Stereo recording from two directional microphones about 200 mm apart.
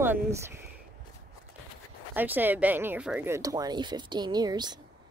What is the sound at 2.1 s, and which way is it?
Speech, 10° right (ahead or behind).